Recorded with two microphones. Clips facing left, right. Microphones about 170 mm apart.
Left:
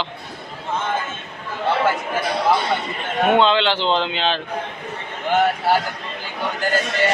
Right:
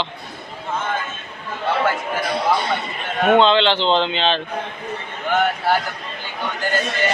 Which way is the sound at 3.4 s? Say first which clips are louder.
Right 2 dB; 10° left (ahead or behind).